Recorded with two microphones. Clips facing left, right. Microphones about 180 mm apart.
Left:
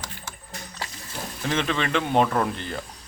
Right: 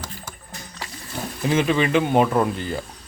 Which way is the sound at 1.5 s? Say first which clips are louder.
Right 6 dB; 10° right (ahead or behind).